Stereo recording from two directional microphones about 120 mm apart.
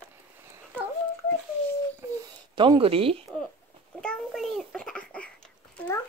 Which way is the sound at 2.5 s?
45° right (ahead or behind).